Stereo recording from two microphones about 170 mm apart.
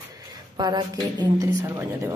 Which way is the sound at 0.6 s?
25° right (ahead or behind).